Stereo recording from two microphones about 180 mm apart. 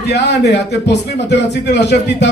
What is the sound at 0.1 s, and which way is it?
Speech, 70° left (ahead or behind).